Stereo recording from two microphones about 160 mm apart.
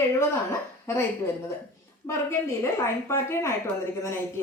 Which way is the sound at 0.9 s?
15° left (ahead or behind).